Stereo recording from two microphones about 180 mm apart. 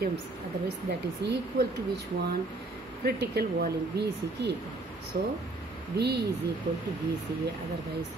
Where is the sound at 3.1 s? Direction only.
60° right (ahead or behind).